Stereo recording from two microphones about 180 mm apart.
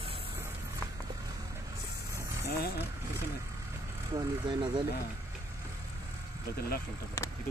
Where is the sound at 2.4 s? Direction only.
60° left (ahead or behind).